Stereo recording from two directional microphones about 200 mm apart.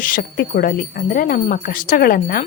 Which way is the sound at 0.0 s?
45° left (ahead or behind).